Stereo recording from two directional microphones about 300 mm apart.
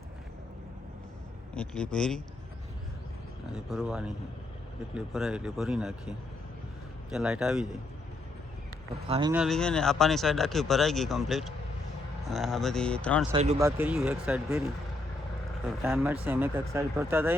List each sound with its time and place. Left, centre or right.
1.5 s speech: centre
3.7 s speech: centre
9.0 s speech: centre
9.3 s speech: centre
13.3 s speech: right
13.6 s speech: centre
15.8 s speech: centre